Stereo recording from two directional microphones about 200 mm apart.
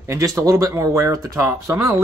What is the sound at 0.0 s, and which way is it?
Speech, 15° right (ahead or behind).